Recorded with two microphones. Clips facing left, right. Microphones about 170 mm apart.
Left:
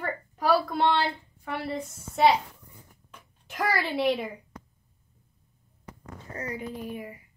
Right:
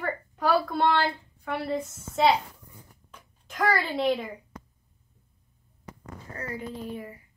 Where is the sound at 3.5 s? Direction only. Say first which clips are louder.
Right 2 dB; 10° left (ahead or behind).